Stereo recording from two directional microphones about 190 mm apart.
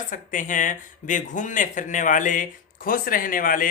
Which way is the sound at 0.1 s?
45° left (ahead or behind).